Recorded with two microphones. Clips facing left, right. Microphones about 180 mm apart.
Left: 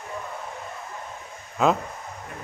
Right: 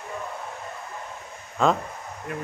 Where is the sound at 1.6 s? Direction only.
5° left (ahead or behind).